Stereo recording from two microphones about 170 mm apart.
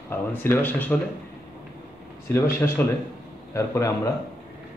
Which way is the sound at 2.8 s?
10° left (ahead or behind).